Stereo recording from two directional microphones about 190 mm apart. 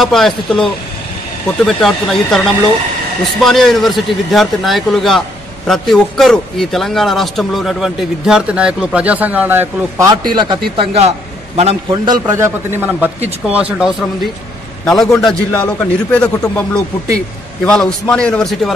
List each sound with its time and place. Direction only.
0.0 s a man's voice: centre (ahead or behind)
3.4 s a man's voice: centre (ahead or behind)
10.3 s a man's voice: 25° right (ahead or behind); by 16.3 s 5° left (ahead or behind)
17.6 s a man's voice: 5° left (ahead or behind)